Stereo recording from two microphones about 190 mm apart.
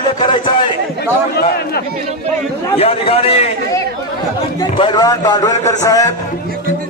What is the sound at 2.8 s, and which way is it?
Speech, 30° left (ahead or behind).